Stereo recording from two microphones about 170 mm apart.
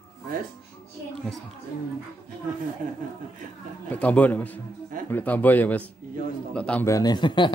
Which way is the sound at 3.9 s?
10° left (ahead or behind).